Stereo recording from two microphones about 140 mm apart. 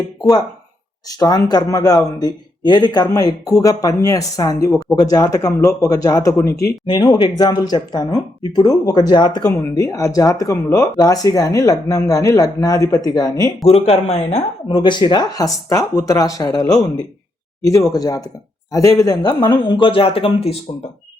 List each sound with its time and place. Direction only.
0.2 s speech: 25° left (ahead or behind)
13.7 s a man's voice: 45° left (ahead or behind)